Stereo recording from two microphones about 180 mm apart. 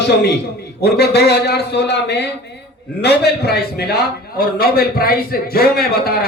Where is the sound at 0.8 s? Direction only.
65° left (ahead or behind).